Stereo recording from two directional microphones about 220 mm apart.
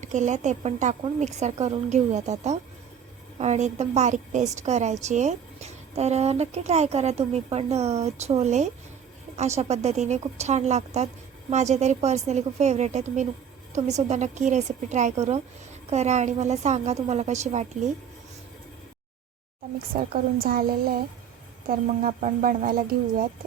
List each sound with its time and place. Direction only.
0.0 s a woman's voice: 35° right (ahead or behind)
20.0 s a woman's voice: 40° right (ahead or behind)